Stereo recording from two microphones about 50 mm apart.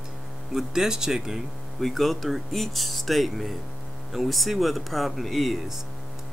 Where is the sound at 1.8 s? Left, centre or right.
Centre.